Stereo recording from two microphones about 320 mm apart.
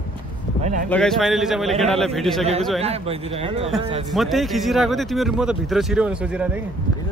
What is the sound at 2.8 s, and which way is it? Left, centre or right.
Speech, centre.